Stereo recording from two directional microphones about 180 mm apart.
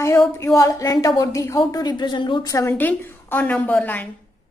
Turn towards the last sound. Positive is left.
turn(degrees=10)  # may be behind; listen again after turning